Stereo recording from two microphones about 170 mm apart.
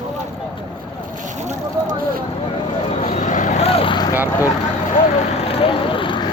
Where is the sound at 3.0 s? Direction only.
45° left (ahead or behind); by 4.2 s 25° left (ahead or behind).